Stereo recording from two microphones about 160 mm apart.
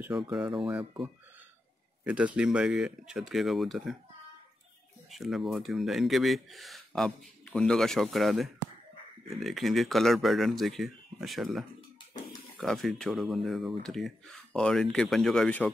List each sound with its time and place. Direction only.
0.0 s speech: 5° right (ahead or behind)
2.0 s speech: 5° right (ahead or behind)
5.1 s speech: centre (ahead or behind)